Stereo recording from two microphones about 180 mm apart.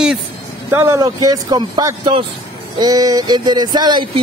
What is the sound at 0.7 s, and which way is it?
Speech, 15° right (ahead or behind).